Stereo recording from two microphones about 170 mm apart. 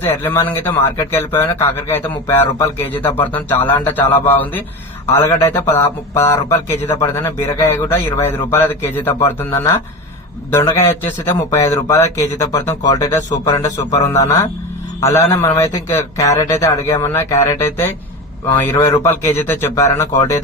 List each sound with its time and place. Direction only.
0.0 s speech: 10° left (ahead or behind)